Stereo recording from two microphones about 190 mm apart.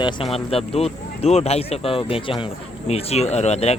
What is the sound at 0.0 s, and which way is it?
Speech, 30° left (ahead or behind).